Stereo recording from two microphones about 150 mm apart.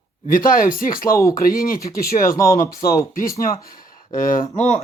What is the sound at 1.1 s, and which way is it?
Speech, 20° left (ahead or behind).